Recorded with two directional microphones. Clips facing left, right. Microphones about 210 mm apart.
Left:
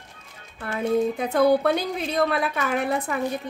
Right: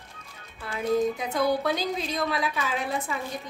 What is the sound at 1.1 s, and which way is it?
A woman's voice, 60° left (ahead or behind).